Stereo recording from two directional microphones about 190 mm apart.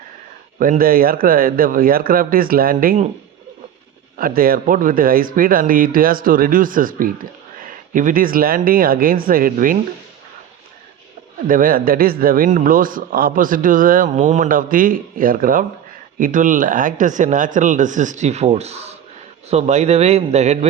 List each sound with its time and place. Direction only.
0.6 s a man's voice: 50° right (ahead or behind)
4.2 s a man's voice: 50° right (ahead or behind)
11.4 s a man's voice: 45° right (ahead or behind)